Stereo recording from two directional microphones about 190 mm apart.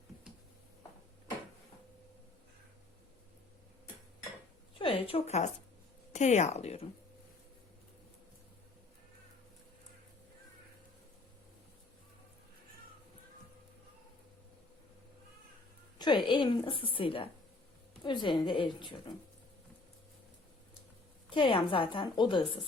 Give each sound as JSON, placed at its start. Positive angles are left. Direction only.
{"t": 4.8, "sound": "speech", "side_deg": 30}
{"t": 16.0, "sound": "a woman's voice", "side_deg": 25}
{"t": 21.2, "sound": "a woman's voice", "side_deg": 25}